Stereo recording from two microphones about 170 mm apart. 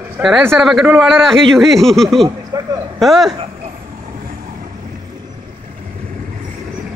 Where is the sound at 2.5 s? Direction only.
20° right (ahead or behind).